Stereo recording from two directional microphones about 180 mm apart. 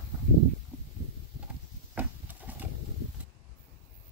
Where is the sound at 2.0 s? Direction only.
10° right (ahead or behind).